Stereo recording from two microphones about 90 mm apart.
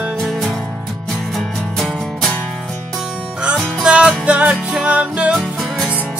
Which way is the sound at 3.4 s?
10° right (ahead or behind).